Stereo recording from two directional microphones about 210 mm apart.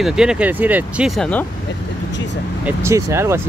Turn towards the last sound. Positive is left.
turn(degrees=-10)  # may be behind; listen again after turning